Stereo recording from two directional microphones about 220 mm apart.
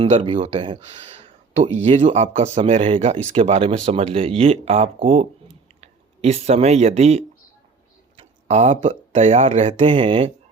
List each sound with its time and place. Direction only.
0.0 s speech: 25° right (ahead or behind)